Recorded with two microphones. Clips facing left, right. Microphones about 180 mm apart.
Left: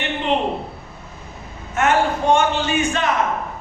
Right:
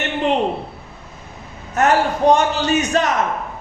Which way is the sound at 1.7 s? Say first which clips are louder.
Right 2 dB; 40° right (ahead or behind).